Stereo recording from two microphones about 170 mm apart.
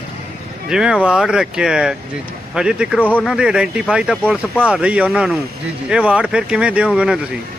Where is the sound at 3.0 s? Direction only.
10° left (ahead or behind).